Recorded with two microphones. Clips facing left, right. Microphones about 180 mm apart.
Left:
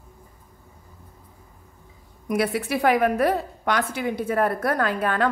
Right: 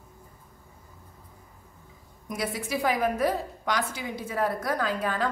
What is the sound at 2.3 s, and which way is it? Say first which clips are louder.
A woman's voice: left 7 dB; 65° left (ahead or behind).